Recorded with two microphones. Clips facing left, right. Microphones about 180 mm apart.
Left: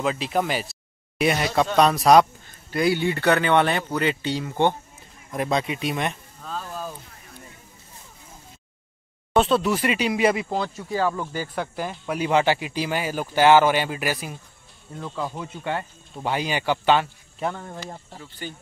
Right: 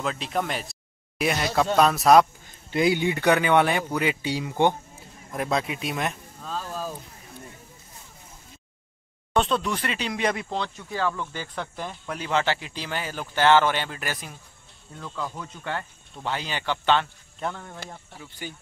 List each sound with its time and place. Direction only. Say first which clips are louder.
0.0 s speech: left 4 dB; 5° left (ahead or behind)
2.7 s speech: even; 20° right (ahead or behind)
5.3 s speech: left 2 dB; centre (ahead or behind)
9.3 s speech: left 4 dB; 5° left (ahead or behind)
15.0 s speech: left 3 dB; 25° left (ahead or behind)
15.4 s speech: left 4 dB; 10° left (ahead or behind)
18.2 s speech: left 1 dB; 10° right (ahead or behind)